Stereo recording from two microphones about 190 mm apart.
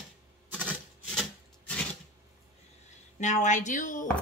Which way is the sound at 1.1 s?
5° left (ahead or behind).